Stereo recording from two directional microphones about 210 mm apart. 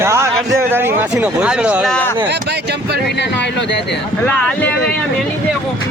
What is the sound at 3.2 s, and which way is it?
Speech, 55° left (ahead or behind).